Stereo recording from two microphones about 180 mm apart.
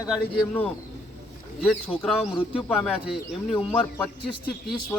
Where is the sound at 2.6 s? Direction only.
Centre (ahead or behind).